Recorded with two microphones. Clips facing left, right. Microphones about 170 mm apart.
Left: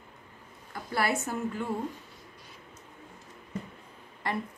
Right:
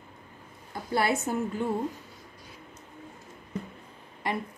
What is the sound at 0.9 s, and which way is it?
Speech, 20° right (ahead or behind).